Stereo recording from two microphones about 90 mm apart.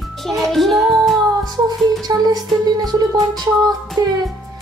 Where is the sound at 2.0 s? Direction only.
45° right (ahead or behind).